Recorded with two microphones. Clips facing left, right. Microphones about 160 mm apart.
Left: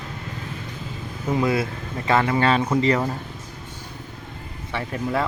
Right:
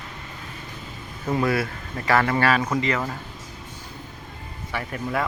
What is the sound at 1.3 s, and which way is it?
Speech, 20° left (ahead or behind).